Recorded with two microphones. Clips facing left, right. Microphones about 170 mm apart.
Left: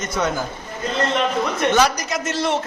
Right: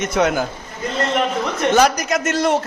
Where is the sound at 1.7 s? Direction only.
50° right (ahead or behind).